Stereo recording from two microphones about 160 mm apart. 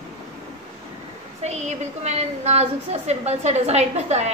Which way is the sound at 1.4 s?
45° right (ahead or behind).